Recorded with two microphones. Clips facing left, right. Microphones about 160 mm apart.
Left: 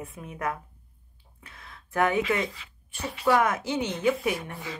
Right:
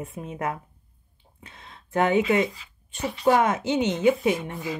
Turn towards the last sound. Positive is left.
turn(degrees=-20)  # may be behind; listen again after turning